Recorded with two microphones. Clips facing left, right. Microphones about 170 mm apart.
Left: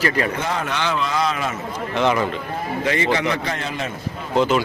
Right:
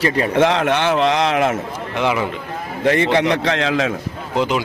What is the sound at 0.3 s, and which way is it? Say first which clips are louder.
A man's voice: right 9 dB; 75° right (ahead or behind).